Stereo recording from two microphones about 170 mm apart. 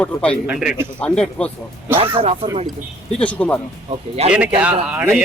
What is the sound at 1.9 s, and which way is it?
Speech, 35° right (ahead or behind).